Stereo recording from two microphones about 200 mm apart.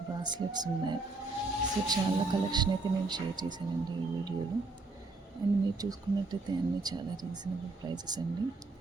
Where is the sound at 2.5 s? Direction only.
20° right (ahead or behind).